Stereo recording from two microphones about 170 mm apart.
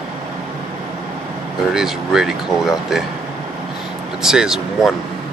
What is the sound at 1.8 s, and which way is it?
Speech, centre (ahead or behind).